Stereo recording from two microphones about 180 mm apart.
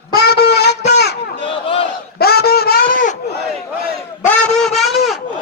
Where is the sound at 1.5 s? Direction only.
30° left (ahead or behind).